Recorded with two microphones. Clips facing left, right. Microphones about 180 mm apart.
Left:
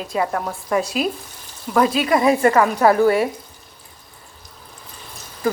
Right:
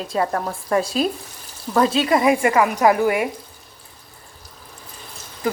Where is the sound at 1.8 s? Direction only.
25° right (ahead or behind).